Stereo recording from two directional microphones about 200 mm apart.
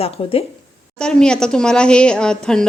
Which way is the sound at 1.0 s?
5° left (ahead or behind).